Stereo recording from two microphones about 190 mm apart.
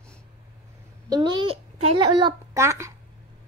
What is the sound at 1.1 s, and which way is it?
A child's voice, 25° right (ahead or behind).